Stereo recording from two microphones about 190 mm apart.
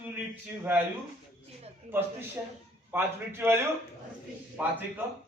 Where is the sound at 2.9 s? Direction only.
10° right (ahead or behind).